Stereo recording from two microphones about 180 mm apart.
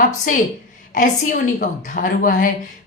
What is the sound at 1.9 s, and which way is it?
Speech, 50° left (ahead or behind).